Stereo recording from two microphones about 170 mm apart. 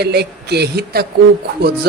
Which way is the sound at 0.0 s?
75° right (ahead or behind).